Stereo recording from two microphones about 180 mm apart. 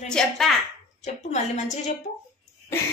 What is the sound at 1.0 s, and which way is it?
Speech, 40° left (ahead or behind).